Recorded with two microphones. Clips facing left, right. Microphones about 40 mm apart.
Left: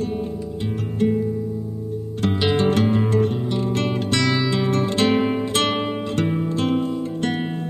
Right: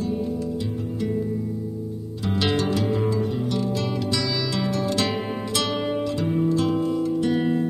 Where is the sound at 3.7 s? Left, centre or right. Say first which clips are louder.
Left 3 dB; left.